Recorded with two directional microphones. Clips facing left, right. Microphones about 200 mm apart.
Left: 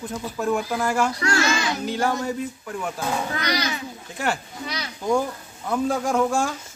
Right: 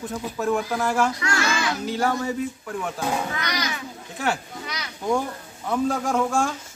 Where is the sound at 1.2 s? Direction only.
30° left (ahead or behind).